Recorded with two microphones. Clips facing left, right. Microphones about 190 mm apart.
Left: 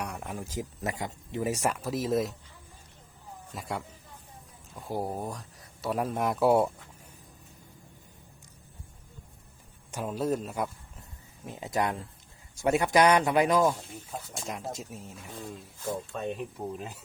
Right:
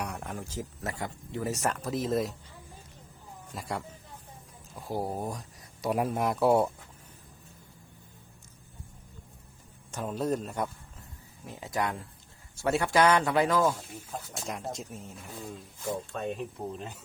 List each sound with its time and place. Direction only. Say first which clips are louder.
0.0 s speech: even; centre (ahead or behind)
3.5 s speech: even; centre (ahead or behind)
6.1 s speech: left 1 dB; centre (ahead or behind)
9.9 s speech: left 1 dB; 5° left (ahead or behind)
11.4 s speech: left 2 dB; 20° left (ahead or behind)
13.9 s speech: even; centre (ahead or behind)